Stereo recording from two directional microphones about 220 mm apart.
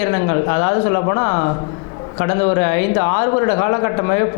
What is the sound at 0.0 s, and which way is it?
A man's voice, 20° left (ahead or behind).